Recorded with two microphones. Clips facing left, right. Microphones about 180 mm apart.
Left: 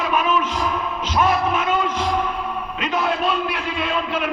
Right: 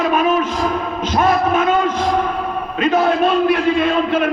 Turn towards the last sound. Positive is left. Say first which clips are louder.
# right 7 dB
turn(degrees=-50)  # may be behind; listen again after turning